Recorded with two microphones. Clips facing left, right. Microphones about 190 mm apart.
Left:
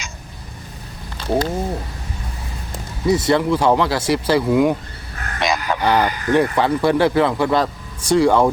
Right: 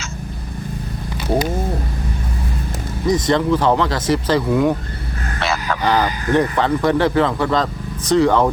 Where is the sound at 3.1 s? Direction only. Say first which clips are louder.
Even; 10° left (ahead or behind).